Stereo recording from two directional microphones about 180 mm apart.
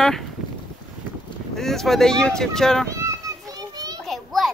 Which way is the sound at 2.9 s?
15° right (ahead or behind).